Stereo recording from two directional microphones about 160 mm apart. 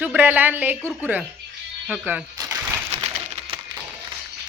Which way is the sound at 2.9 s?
40° right (ahead or behind).